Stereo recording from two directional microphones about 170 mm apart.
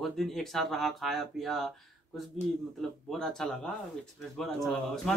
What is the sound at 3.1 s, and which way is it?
A man's voice, 5° left (ahead or behind).